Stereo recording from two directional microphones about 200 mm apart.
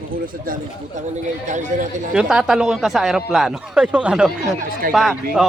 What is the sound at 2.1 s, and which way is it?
A man's voice, centre (ahead or behind).